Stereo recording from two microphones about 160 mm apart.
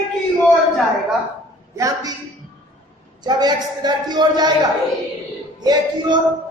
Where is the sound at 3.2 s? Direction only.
25° right (ahead or behind).